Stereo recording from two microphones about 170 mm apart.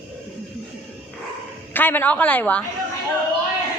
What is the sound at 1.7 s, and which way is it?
Speech, 10° left (ahead or behind).